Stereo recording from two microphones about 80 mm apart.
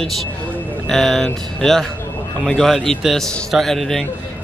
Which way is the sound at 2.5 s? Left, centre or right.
Centre.